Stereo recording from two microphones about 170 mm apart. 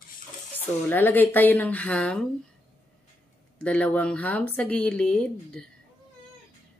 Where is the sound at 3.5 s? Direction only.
10° left (ahead or behind).